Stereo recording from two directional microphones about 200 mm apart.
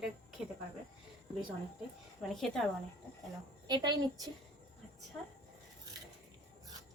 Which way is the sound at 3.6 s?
20° right (ahead or behind).